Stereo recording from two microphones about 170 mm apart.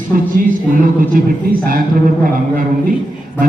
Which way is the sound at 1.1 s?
55° right (ahead or behind).